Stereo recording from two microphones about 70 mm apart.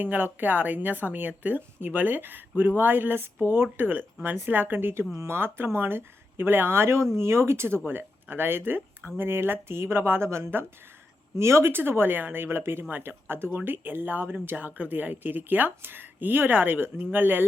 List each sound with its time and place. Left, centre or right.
0.0 s speech: right